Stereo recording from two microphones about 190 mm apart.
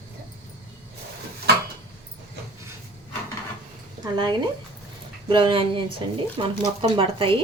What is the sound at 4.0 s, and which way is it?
Speech, 25° right (ahead or behind).